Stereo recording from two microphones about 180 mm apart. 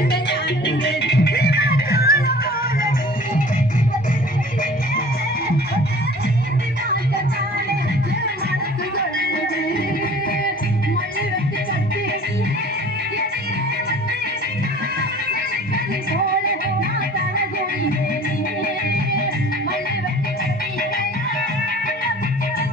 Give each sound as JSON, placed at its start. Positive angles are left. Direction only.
{"t": 0.1, "sound": "music", "side_deg": 70}